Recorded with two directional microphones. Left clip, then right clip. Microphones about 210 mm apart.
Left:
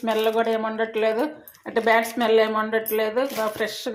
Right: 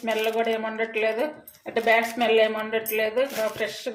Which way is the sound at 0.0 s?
30° left (ahead or behind).